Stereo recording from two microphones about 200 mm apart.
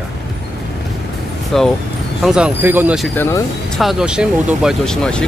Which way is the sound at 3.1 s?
10° left (ahead or behind).